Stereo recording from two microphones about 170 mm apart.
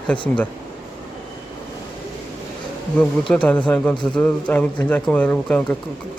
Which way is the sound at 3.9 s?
25° left (ahead or behind).